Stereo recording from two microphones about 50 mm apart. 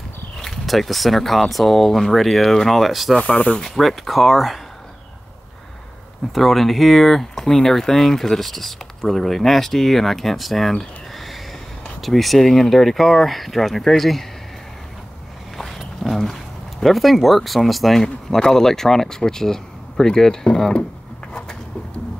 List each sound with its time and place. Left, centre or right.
0.4 s speech: centre
3.2 s speech: left
3.6 s speech: centre
6.3 s speech: centre
10.7 s a sound: centre
12.0 s speech: centre
15.5 s a sound: centre
16.8 s speech: centre
21.3 s a sound: centre